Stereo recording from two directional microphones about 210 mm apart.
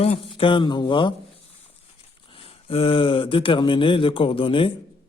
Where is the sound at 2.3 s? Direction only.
25° left (ahead or behind).